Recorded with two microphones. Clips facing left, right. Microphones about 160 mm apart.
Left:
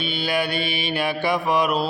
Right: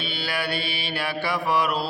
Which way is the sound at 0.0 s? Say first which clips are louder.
Left 5 dB; 20° left (ahead or behind).